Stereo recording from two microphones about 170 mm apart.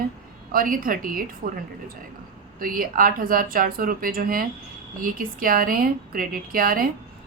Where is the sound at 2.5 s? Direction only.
55° right (ahead or behind).